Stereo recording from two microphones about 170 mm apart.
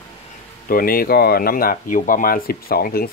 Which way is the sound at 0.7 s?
60° left (ahead or behind).